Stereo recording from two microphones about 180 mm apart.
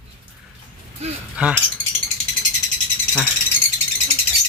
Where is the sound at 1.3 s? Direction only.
5° right (ahead or behind).